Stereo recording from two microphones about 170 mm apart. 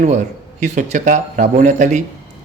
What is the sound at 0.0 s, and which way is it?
A man's voice, 45° right (ahead or behind).